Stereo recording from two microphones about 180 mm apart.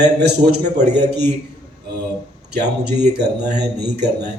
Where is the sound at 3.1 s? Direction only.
65° right (ahead or behind).